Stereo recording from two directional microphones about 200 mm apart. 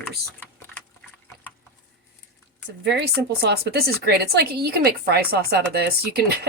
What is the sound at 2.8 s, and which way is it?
Speech, 55° right (ahead or behind).